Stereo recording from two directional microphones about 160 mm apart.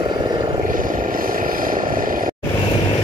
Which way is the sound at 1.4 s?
60° right (ahead or behind).